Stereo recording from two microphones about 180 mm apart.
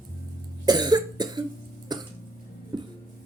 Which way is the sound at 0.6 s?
25° right (ahead or behind).